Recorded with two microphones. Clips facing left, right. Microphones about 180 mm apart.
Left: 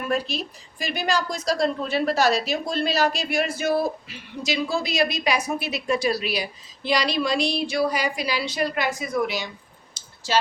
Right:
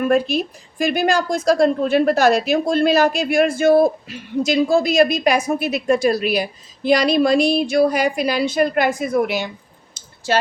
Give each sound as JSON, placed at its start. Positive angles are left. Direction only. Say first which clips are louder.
{"t": 0.0, "sound": "a woman's voice", "louder": "right 9 dB", "side_deg": -50}
{"t": 9.9, "sound": "clicking", "louder": "right 4 dB", "side_deg": -55}